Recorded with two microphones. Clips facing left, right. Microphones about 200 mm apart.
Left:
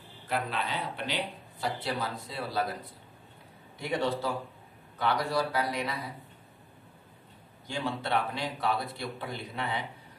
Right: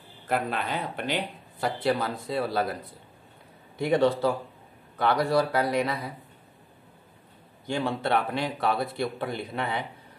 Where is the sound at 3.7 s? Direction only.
55° right (ahead or behind).